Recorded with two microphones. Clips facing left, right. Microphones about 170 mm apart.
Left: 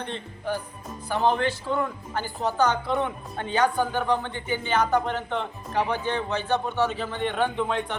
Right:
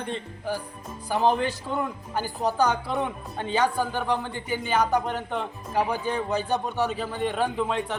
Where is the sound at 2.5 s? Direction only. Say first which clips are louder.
Left 3 dB; 5° right (ahead or behind).